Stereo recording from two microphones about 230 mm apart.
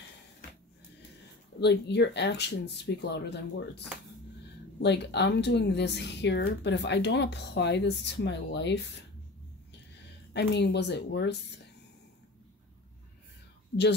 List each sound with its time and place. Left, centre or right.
1.6 s speech: left
4.7 s speech: left
10.3 s speech: left